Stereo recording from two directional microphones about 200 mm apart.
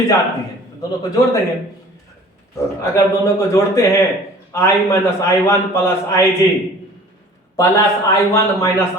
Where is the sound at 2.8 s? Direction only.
15° left (ahead or behind).